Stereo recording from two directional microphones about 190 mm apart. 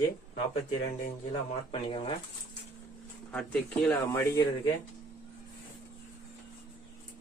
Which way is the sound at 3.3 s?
5° left (ahead or behind).